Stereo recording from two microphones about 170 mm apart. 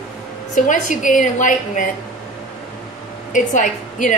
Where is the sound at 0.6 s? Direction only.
50° left (ahead or behind).